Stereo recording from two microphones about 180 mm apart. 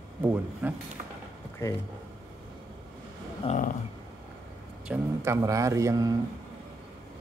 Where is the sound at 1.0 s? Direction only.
45° right (ahead or behind).